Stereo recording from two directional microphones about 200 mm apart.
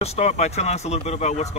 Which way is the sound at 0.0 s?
35° left (ahead or behind).